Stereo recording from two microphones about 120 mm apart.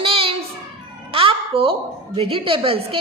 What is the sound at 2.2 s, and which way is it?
Speech, 50° right (ahead or behind).